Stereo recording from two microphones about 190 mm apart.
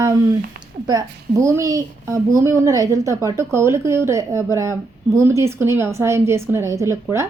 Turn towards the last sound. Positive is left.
turn(degrees=-15)  # may be behind; listen again after turning